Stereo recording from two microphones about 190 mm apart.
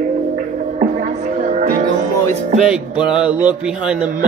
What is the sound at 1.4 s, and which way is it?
Music, 45° right (ahead or behind).